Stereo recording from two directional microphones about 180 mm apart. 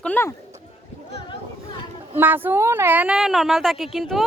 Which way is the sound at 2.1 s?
10° right (ahead or behind).